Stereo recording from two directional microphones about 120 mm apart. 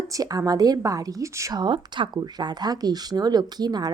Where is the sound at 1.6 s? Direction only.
40° right (ahead or behind).